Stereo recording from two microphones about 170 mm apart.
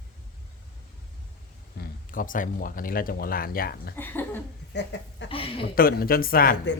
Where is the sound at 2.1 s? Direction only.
55° left (ahead or behind).